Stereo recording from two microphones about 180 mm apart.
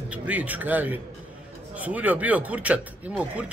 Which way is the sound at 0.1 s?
10° right (ahead or behind).